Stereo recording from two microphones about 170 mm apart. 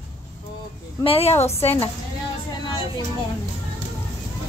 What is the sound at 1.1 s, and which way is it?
Speech, 35° left (ahead or behind).